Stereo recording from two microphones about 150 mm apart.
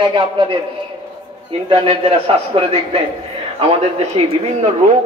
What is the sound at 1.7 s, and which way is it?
A man's voice, 35° right (ahead or behind).